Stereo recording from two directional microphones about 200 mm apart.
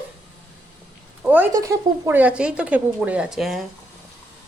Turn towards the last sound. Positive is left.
turn(degrees=0)  # may be behind; listen again after turning